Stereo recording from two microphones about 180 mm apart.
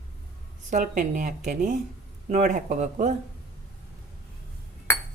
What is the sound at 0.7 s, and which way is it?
Speech, 45° right (ahead or behind).